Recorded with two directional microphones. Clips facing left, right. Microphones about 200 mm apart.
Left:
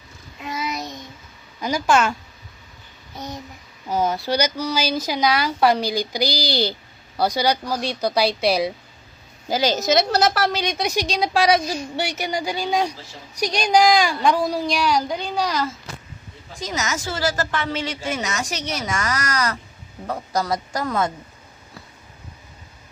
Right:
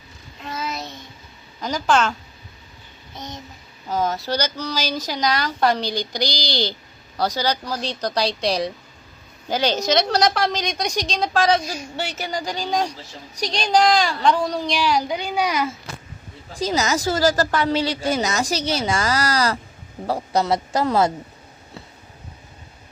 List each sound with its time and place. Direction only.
0.4 s child singing: 15° left (ahead or behind)
1.6 s speech: 10° left (ahead or behind)
3.8 s a woman's voice: 10° left (ahead or behind); by 15.7 s 10° right (ahead or behind)
16.6 s a woman's voice: 35° right (ahead or behind)